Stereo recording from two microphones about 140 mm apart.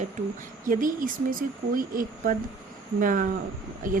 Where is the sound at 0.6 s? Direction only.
75° right (ahead or behind).